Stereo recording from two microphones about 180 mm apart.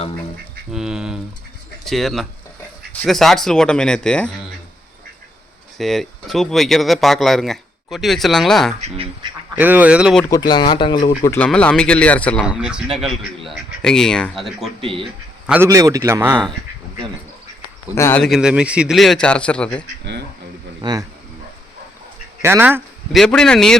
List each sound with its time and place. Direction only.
0.7 s speech: 5° right (ahead or behind)
5.7 s speech: centre (ahead or behind)
8.8 s speech: 30° right (ahead or behind)
9.6 s a man's voice: 10° right (ahead or behind)
10.2 s speech: 20° left (ahead or behind)
11.2 s speech: 10° left (ahead or behind)
12.5 s speech: 5° right (ahead or behind)
14.8 s speech: 30° right (ahead or behind)
15.4 s a man's voice: 10° right (ahead or behind)
17.9 s speech: 15° left (ahead or behind)
18.2 s speech: centre (ahead or behind)
20.8 s speech: 25° right (ahead or behind)
22.4 s speech: 15° right (ahead or behind)
23.1 s speech: 5° left (ahead or behind)